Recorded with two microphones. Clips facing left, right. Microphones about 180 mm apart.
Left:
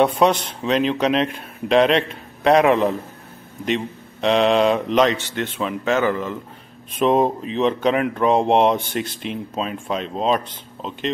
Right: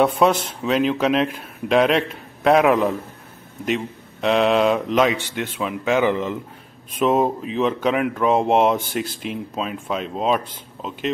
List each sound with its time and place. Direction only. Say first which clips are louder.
0.0 s speech: even; 5° right (ahead or behind)
7.0 s speech: left 1 dB; 5° right (ahead or behind)